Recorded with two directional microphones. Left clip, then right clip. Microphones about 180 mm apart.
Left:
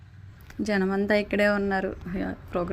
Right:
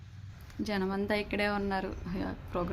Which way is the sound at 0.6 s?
20° left (ahead or behind).